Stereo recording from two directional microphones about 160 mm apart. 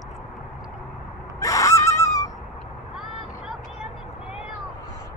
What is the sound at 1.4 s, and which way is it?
Gasp, 20° left (ahead or behind).